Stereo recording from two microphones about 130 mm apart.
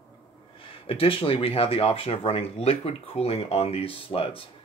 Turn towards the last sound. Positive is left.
turn(degrees=45)  # may be behind; listen again after turning